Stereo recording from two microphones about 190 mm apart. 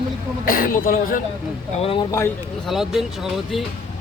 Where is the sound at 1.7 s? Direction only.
30° left (ahead or behind).